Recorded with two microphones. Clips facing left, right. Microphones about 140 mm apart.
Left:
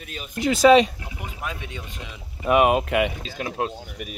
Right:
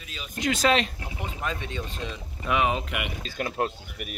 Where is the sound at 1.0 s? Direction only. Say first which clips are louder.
Right 1 dB; 30° right (ahead or behind).